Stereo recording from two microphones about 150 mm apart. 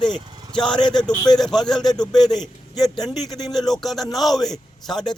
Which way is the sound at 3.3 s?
25° left (ahead or behind).